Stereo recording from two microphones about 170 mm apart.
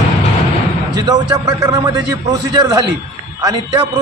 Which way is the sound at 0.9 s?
25° right (ahead or behind).